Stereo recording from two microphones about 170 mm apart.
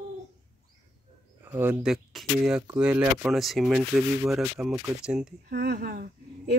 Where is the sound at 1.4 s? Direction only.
10° right (ahead or behind).